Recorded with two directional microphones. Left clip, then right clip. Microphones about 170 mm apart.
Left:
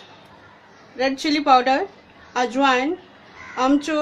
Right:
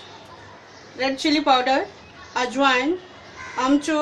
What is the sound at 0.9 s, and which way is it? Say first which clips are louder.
A woman's voice: even; 65° left (ahead or behind).